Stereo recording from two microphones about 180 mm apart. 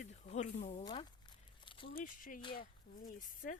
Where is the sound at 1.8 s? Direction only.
50° left (ahead or behind).